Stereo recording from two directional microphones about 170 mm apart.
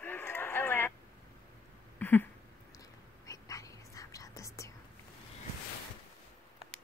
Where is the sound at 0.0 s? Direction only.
10° left (ahead or behind).